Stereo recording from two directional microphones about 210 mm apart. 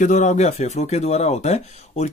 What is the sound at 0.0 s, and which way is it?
Speech, 35° left (ahead or behind).